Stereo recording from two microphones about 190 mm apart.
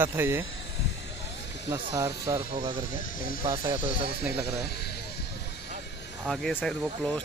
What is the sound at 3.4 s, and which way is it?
Speech, 25° right (ahead or behind).